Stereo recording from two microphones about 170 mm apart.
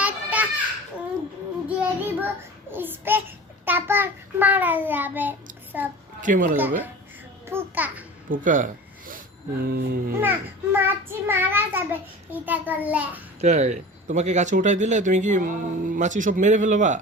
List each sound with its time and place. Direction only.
0.0 s children playing: 10° right (ahead or behind)
1.6 s child singing: 10° right (ahead or behind)
2.7 s a child's voice: 10° right (ahead or behind)
6.2 s speech: 50° right (ahead or behind)
6.6 s a child's voice: 10° right (ahead or behind)
8.3 s speech: 50° right (ahead or behind)
9.0 s a sound: 55° right (ahead or behind)
10.2 s a child's voice: 10° right (ahead or behind)
13.4 s speech: 45° right (ahead or behind)